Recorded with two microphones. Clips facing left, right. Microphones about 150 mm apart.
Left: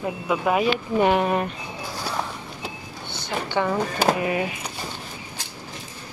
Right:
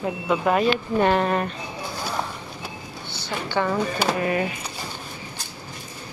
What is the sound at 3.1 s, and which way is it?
A woman's voice, 20° left (ahead or behind).